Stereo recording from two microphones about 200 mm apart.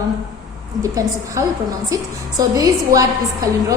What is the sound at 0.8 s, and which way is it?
Speech, 15° right (ahead or behind).